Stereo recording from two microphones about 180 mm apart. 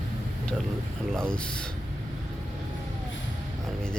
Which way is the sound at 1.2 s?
5° left (ahead or behind).